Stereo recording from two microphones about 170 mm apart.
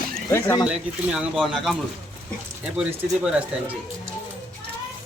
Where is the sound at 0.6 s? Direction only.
5° right (ahead or behind).